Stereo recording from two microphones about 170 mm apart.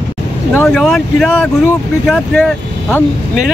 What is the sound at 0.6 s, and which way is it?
Speech, centre (ahead or behind).